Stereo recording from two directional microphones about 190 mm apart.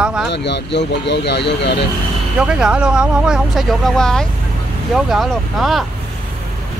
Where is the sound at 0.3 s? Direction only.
65° left (ahead or behind).